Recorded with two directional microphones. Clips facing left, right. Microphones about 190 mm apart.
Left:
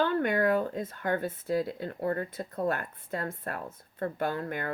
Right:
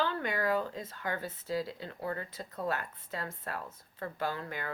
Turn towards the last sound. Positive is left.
turn(degrees=50)  # may be behind; listen again after turning